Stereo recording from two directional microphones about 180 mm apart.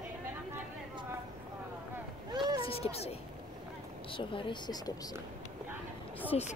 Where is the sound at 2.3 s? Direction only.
25° right (ahead or behind).